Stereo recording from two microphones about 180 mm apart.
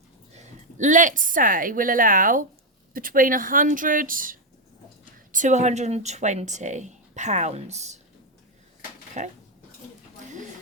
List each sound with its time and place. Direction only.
0.3 s a woman's voice: 45° right (ahead or behind)
9.2 s a woman's voice: 40° right (ahead or behind)